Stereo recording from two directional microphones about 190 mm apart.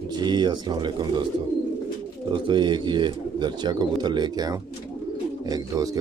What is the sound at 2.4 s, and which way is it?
Speech, 25° right (ahead or behind).